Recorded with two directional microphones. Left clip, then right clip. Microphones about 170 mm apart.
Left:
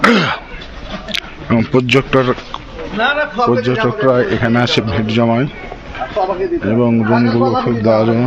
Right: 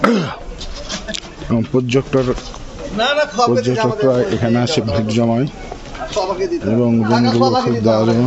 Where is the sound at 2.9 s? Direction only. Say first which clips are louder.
Left 1 dB; 90° right.